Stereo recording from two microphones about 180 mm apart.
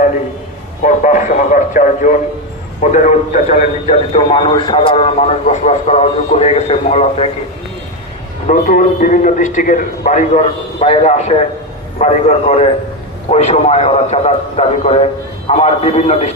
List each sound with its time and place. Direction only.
0.8 s a man's voice: 45° left (ahead or behind)
8.5 s a man's voice: 45° left (ahead or behind)